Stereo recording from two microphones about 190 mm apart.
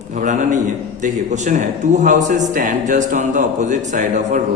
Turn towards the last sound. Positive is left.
turn(degrees=-40)  # may be behind; listen again after turning